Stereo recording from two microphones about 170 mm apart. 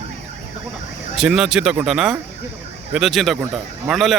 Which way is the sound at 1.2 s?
5° right (ahead or behind).